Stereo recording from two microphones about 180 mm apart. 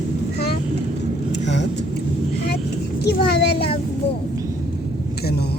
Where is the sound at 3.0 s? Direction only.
65° left (ahead or behind).